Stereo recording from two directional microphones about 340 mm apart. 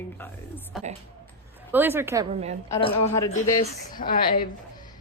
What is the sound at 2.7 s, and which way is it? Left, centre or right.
A woman's voice, centre.